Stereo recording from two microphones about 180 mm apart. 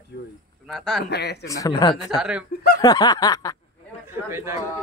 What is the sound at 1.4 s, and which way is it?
Snicker, 20° left (ahead or behind).